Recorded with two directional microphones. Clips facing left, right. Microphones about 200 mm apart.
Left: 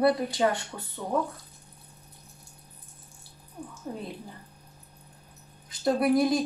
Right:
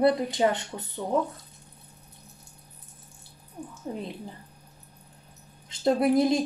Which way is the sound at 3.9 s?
20° right (ahead or behind).